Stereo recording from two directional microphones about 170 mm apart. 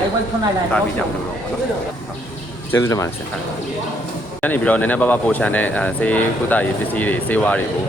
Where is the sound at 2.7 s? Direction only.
20° left (ahead or behind).